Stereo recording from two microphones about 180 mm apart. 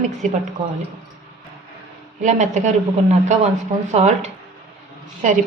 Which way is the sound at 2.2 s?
45° right (ahead or behind).